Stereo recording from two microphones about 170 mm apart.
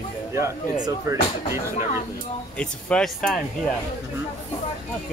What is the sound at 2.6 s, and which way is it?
Speech, 5° left (ahead or behind).